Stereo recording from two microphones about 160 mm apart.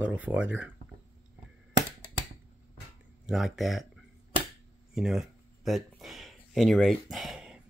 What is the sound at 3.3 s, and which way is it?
Speech, centre (ahead or behind).